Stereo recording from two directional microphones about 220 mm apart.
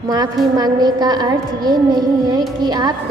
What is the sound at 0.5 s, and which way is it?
A woman's voice, 20° right (ahead or behind).